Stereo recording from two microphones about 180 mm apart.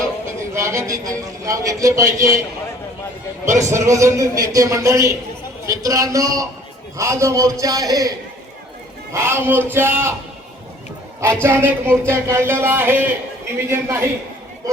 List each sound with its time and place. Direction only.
0.3 s a man's voice: 15° right (ahead or behind)
3.4 s a man's voice: 15° right (ahead or behind)
9.1 s a man's voice: 15° right (ahead or behind)
11.4 s a man's voice: 15° right (ahead or behind)